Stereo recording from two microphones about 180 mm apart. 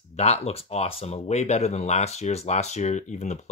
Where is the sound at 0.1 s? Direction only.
35° left (ahead or behind).